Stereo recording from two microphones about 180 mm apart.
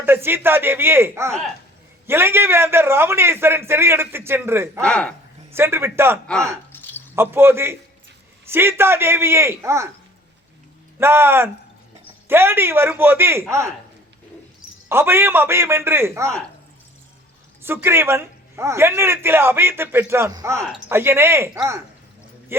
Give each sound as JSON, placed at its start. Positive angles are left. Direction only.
{"t": 0.0, "sound": "a man's voice", "side_deg": -10}
{"t": 4.8, "sound": "speech", "side_deg": 5}
{"t": 5.5, "sound": "a man's voice", "side_deg": -15}
{"t": 6.7, "sound": "a sound", "side_deg": 10}
{"t": 7.2, "sound": "a man's voice", "side_deg": -15}
{"t": 11.0, "sound": "a man's voice", "side_deg": -15}
{"t": 14.8, "sound": "a man's voice", "side_deg": -10}
{"t": 17.6, "sound": "a man's voice", "side_deg": -10}